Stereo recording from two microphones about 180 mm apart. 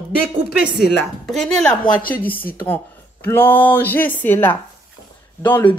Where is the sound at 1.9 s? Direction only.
50° left (ahead or behind).